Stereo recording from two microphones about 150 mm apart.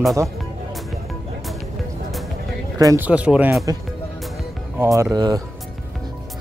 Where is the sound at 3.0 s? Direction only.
10° right (ahead or behind).